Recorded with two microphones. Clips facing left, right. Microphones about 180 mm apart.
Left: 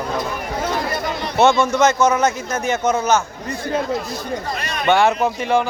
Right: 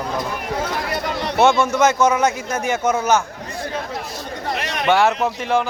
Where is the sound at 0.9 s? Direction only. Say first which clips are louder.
Even; 70° right (ahead or behind).